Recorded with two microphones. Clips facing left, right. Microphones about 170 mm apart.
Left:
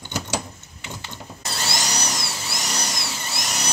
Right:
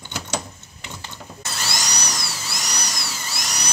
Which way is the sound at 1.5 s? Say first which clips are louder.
Left 2 dB; 25° left (ahead or behind).